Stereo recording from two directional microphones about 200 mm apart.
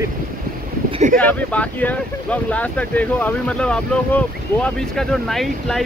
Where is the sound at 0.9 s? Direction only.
40° right (ahead or behind).